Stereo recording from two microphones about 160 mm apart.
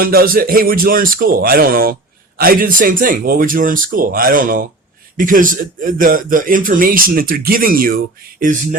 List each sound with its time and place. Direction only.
0.0 s a man's voice: 65° right (ahead or behind)